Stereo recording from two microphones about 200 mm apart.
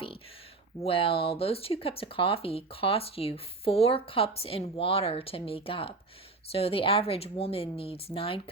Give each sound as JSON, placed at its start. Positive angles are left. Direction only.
{"t": 0.9, "sound": "speech", "side_deg": 25}